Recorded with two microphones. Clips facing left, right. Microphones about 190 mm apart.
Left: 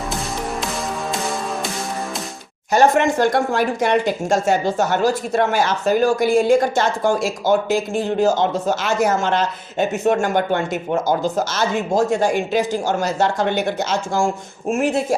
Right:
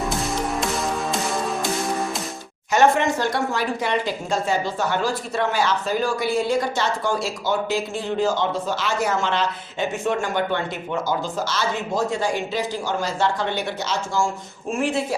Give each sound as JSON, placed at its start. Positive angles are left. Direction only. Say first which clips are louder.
{"t": 2.7, "sound": "speech", "louder": "left 3 dB", "side_deg": 50}